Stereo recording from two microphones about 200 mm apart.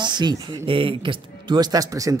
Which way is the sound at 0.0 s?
20° right (ahead or behind).